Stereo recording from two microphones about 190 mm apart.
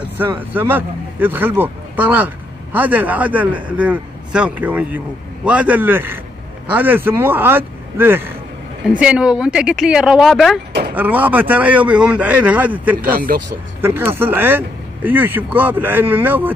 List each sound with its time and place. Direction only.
0.5 s speech: 10° right (ahead or behind)
13.0 s speech: 50° right (ahead or behind)
13.7 s speech: 10° right (ahead or behind)